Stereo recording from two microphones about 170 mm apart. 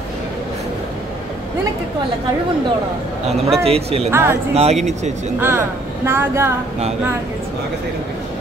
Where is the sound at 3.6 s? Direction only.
35° right (ahead or behind).